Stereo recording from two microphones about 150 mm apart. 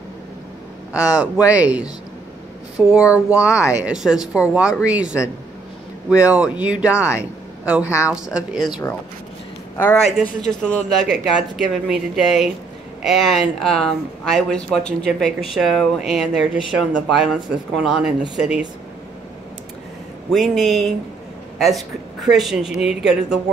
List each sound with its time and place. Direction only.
0.9 s speech: 5° right (ahead or behind)
6.2 s speech: 10° right (ahead or behind)
6.9 s speech: 20° left (ahead or behind)
8.1 s speech: 5° right (ahead or behind)
10.5 s speech: 5° left (ahead or behind)
20.2 s speech: centre (ahead or behind)